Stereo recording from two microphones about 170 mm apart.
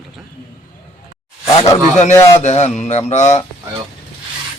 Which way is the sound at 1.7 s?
40° left (ahead or behind).